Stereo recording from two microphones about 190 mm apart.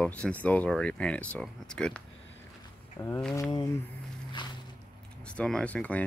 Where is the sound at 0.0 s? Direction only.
5° left (ahead or behind).